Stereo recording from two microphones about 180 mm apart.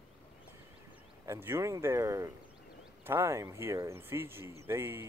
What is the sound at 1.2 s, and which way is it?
Speech, 15° right (ahead or behind).